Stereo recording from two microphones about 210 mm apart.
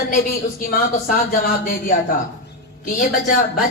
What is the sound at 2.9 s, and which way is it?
Speech, 45° left (ahead or behind).